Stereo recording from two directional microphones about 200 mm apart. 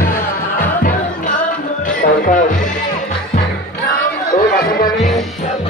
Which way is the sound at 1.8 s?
40° left (ahead or behind).